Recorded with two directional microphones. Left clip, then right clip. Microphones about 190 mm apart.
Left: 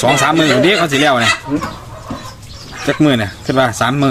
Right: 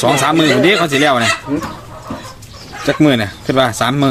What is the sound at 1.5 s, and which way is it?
Speech, 30° right (ahead or behind).